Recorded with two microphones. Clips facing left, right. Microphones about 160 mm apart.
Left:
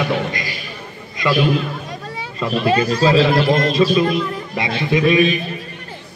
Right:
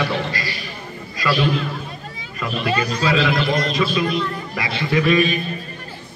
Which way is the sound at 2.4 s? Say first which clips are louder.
Left 5 dB; 30° left (ahead or behind).